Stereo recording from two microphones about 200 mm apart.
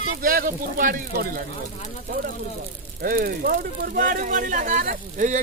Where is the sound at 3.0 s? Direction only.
45° right (ahead or behind).